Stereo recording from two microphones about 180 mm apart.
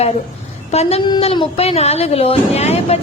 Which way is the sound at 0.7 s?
35° left (ahead or behind).